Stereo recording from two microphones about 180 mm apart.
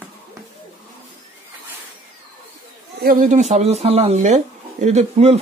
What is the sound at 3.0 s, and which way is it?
Speech, 45° right (ahead or behind).